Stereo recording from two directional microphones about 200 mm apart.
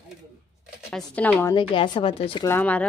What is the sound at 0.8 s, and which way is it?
Speech, 5° left (ahead or behind).